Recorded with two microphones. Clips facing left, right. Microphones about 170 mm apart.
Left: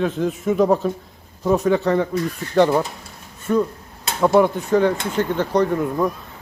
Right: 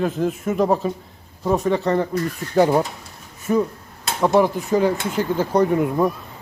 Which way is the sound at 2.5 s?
10° right (ahead or behind).